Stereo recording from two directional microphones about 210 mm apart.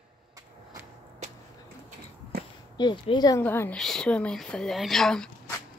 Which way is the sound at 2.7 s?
20° left (ahead or behind).